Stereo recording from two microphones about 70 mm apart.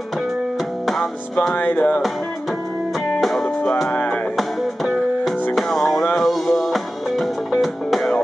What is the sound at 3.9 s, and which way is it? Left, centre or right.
Music, left.